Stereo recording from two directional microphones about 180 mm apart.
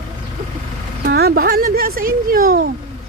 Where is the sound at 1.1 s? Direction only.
60° right (ahead or behind).